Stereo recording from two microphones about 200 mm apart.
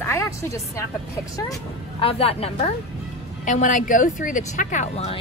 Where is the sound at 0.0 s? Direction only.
15° left (ahead or behind).